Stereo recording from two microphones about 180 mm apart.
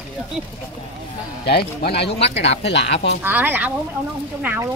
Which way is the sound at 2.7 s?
75° left (ahead or behind).